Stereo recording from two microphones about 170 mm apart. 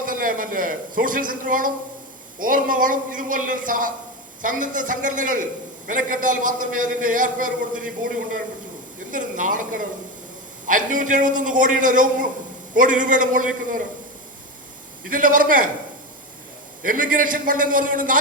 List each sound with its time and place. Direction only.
0.0 s a man's voice: 55° right (ahead or behind)
9.1 s a man's voice: 50° right (ahead or behind)
15.0 s a man's voice: 55° right (ahead or behind)
16.8 s a man's voice: 55° right (ahead or behind)